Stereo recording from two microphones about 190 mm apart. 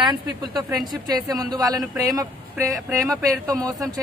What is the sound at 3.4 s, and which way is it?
Speech, 5° left (ahead or behind).